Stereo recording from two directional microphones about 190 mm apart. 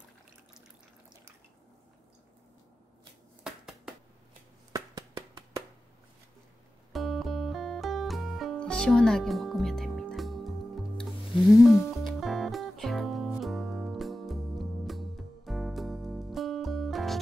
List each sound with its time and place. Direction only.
3.4 s finger snapping: 5° right (ahead or behind)
4.7 s a sound: 20° right (ahead or behind)
6.9 s music: centre (ahead or behind)